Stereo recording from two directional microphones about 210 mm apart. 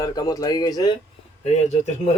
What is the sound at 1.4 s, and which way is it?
Speech, 30° left (ahead or behind).